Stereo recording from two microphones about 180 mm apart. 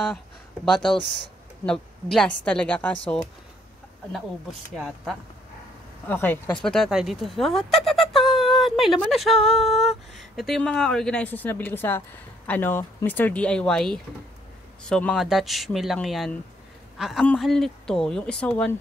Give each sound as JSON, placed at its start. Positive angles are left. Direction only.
{"t": 1.7, "sound": "speech", "side_deg": 5}
{"t": 4.1, "sound": "speech", "side_deg": 0}
{"t": 6.0, "sound": "speech", "side_deg": 10}